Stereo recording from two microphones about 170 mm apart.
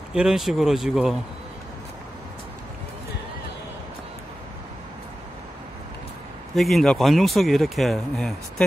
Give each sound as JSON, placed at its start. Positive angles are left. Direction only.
{"t": 0.1, "sound": "speech", "side_deg": -5}
{"t": 6.5, "sound": "speech", "side_deg": 0}